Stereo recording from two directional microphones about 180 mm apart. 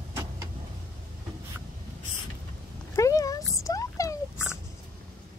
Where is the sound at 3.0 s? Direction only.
20° left (ahead or behind).